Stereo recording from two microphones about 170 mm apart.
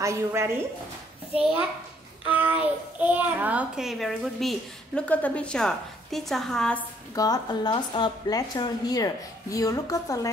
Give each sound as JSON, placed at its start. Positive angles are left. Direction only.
{"t": 0.0, "sound": "a woman's voice", "side_deg": -15}
{"t": 2.2, "sound": "a child's voice", "side_deg": -10}
{"t": 7.2, "sound": "a woman's voice", "side_deg": 25}